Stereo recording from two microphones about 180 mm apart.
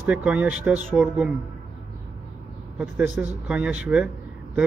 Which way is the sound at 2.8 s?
5° right (ahead or behind).